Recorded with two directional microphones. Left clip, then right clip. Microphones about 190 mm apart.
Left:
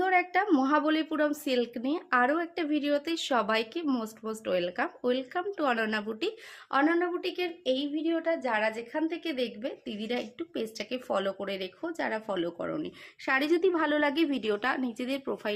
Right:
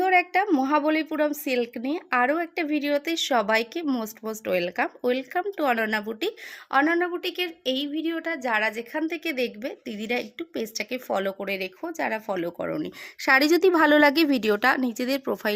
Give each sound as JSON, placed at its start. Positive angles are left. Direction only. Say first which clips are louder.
{"t": 0.0, "sound": "speech", "louder": "right 5 dB", "side_deg": -30}